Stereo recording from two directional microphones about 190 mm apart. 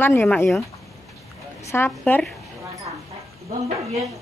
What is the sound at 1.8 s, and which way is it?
Speech, 5° left (ahead or behind).